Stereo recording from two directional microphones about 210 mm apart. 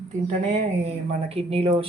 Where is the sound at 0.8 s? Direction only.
30° right (ahead or behind).